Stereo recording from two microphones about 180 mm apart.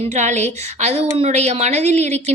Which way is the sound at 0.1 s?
40° right (ahead or behind).